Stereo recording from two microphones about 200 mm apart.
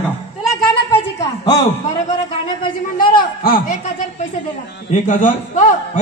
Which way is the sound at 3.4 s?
45° left (ahead or behind).